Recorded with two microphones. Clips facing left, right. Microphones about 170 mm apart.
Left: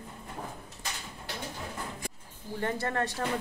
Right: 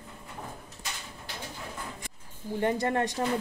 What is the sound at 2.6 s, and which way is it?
Speech, 20° right (ahead or behind).